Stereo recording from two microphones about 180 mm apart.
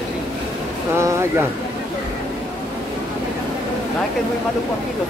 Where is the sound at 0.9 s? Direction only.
15° right (ahead or behind).